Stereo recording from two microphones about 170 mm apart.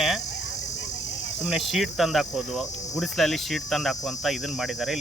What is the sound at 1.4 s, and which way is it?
Cricket, centre (ahead or behind).